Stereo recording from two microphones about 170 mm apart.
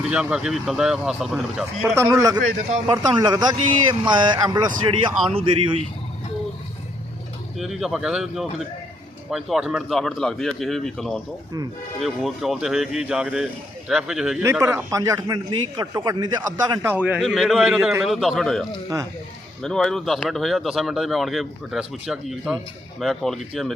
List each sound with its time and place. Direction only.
0.0 s speech: 5° right (ahead or behind)
2.0 s a man's voice: 20° right (ahead or behind)
7.6 s speech: centre (ahead or behind)
14.4 s a man's voice: 15° right (ahead or behind); by 18.6 s centre (ahead or behind)
19.6 s speech: 5° left (ahead or behind)